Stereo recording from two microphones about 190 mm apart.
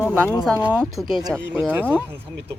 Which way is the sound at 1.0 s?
Centre (ahead or behind).